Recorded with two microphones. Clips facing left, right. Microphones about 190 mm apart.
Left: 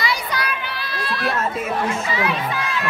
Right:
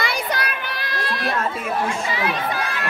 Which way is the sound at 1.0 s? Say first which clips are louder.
Left 2 dB; 45° right (ahead or behind).